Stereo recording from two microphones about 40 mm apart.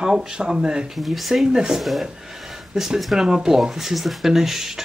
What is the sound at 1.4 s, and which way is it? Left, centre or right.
Speech, centre.